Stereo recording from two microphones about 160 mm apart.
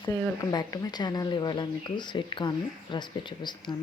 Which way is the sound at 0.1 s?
25° left (ahead or behind).